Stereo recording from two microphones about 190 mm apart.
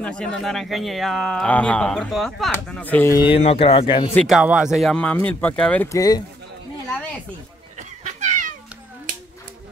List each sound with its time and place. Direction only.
0.0 s speech: 5° left (ahead or behind)
3.2 s speech: 30° left (ahead or behind)
4.3 s speech: 5° right (ahead or behind); by 6.2 s 20° left (ahead or behind)
8.0 s cat: 40° right (ahead or behind)